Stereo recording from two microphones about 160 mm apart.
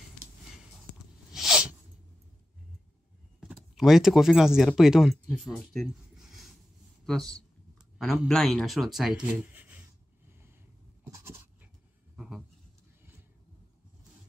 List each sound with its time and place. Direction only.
1.3 s sneeze: 5° right (ahead or behind)
3.3 s speech: 5° right (ahead or behind)
11.1 s writing: 15° right (ahead or behind)
12.2 s a sound: centre (ahead or behind)